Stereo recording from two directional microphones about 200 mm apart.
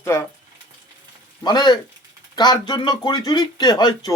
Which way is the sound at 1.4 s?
20° left (ahead or behind).